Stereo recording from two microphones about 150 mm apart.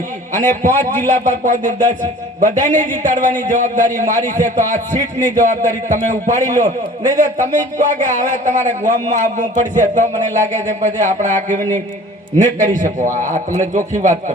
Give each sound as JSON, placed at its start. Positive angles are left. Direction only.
{"t": 0.3, "sound": "speech", "side_deg": -55}